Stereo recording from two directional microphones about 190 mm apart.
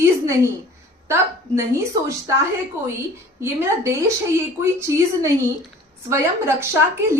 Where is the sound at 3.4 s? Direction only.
15° right (ahead or behind).